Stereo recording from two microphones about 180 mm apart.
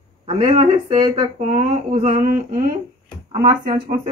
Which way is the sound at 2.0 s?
45° right (ahead or behind).